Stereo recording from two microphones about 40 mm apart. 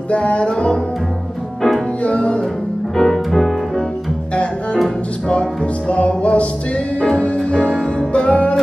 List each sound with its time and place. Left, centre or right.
0.1 s music: left
2.0 s music: left
3.0 s music: centre
5.9 s music: left